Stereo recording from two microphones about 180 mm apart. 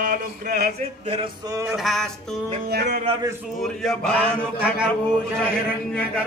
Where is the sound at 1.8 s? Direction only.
Centre (ahead or behind).